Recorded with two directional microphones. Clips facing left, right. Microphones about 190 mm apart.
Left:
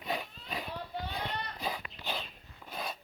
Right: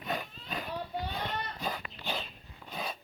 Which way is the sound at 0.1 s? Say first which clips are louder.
Even; 5° left (ahead or behind).